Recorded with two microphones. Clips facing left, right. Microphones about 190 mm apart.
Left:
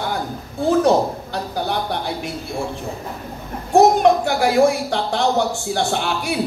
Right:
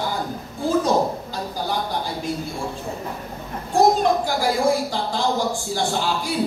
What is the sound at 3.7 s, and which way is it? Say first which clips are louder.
A woman's voice: left 4 dB; 70° left (ahead or behind).